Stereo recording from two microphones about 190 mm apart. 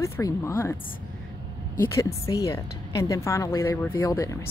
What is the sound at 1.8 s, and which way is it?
Speech, 15° left (ahead or behind).